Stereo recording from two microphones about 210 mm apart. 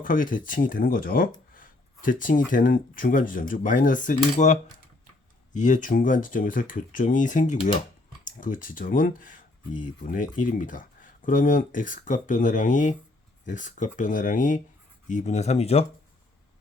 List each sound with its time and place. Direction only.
0.0 s speech: 40° left (ahead or behind)
5.5 s speech: 35° left (ahead or behind)